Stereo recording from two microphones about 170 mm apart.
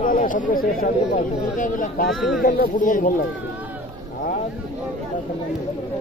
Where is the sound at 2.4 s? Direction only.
55° left (ahead or behind).